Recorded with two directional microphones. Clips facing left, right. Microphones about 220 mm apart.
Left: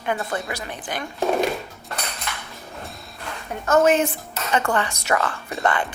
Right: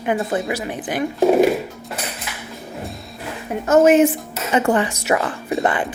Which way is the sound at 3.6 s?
20° right (ahead or behind).